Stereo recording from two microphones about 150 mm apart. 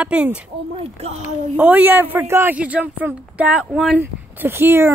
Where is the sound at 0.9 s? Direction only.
45° right (ahead or behind).